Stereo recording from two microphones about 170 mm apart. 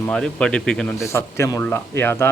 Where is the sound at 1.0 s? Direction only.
15° left (ahead or behind).